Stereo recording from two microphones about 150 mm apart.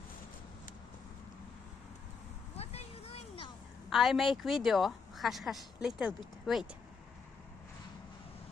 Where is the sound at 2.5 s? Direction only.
45° left (ahead or behind).